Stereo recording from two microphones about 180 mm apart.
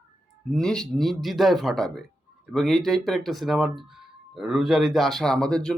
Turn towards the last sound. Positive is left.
turn(degrees=5)  # may be behind; listen again after turning